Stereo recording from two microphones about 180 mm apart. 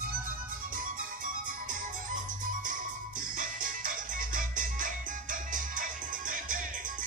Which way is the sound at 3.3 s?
50° right (ahead or behind).